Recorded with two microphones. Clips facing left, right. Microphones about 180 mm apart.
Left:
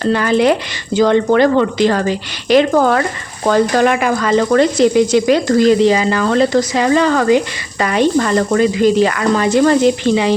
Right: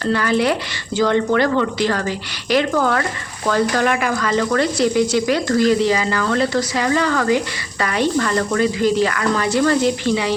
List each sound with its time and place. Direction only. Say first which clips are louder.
0.0 s speech: left 5 dB; 20° left (ahead or behind)